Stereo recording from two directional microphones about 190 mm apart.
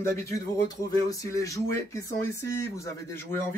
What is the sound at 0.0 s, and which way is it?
Speech, 15° left (ahead or behind).